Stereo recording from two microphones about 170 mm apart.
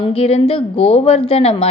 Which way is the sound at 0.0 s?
35° left (ahead or behind).